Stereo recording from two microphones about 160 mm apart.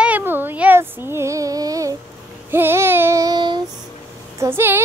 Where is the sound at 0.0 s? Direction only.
10° right (ahead or behind).